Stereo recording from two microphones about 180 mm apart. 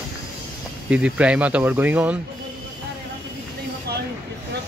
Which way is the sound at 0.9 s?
5° right (ahead or behind).